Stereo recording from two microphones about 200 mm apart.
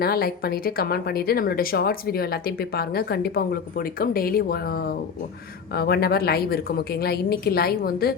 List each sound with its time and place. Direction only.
0.0 s speech: 50° left (ahead or behind)